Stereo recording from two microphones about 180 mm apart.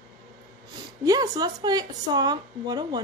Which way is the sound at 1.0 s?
20° right (ahead or behind).